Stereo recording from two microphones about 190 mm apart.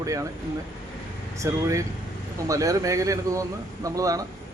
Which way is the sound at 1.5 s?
15° right (ahead or behind).